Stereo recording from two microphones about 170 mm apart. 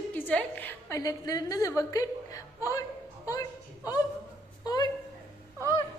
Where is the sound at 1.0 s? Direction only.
20° left (ahead or behind).